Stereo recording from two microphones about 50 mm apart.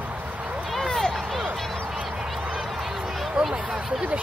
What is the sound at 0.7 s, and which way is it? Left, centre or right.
Run, centre.